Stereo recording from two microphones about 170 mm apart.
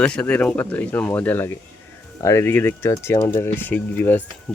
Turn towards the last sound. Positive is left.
turn(degrees=10)  # may be behind; listen again after turning